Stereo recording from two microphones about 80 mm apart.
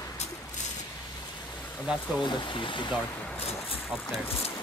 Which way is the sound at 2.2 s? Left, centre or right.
Left.